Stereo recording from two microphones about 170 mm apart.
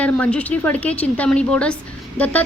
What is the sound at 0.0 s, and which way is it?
Speech, 5° left (ahead or behind).